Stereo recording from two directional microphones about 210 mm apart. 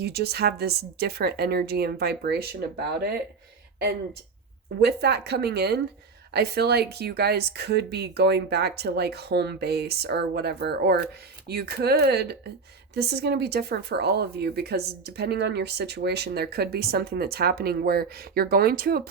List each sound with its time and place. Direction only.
0.0 s speech: 50° right (ahead or behind)
4.8 s speech: 50° right (ahead or behind)